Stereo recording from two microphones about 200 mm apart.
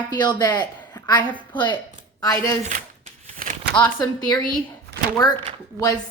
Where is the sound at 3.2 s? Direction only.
40° right (ahead or behind).